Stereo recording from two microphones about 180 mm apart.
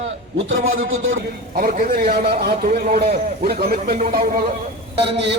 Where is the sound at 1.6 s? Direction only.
55° right (ahead or behind).